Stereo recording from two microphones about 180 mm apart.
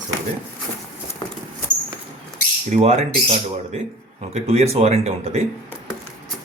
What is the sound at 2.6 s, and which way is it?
Speech, 40° right (ahead or behind).